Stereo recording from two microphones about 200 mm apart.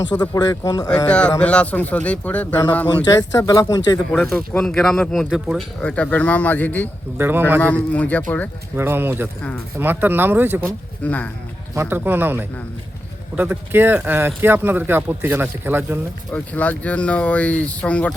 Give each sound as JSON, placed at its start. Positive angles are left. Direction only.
{"t": 0.0, "sound": "speech", "side_deg": 20}
{"t": 1.0, "sound": "speech", "side_deg": 5}
{"t": 2.8, "sound": "speech", "side_deg": 20}
{"t": 4.1, "sound": "speech", "side_deg": 0}
{"t": 7.2, "sound": "speech", "side_deg": -10}
{"t": 7.6, "sound": "speech", "side_deg": 10}
{"t": 8.7, "sound": "speech", "side_deg": -10}
{"t": 11.0, "sound": "speech", "side_deg": 5}
{"t": 11.7, "sound": "speech", "side_deg": -10}
{"t": 16.3, "sound": "speech", "side_deg": 5}